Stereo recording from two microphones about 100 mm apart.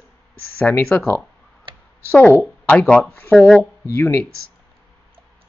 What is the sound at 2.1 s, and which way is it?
Speech, 20° left (ahead or behind).